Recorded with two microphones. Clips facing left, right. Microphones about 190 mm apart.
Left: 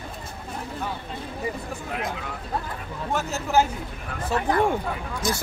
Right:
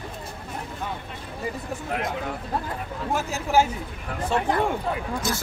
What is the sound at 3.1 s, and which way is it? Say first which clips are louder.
Speech: even; 10° right (ahead or behind).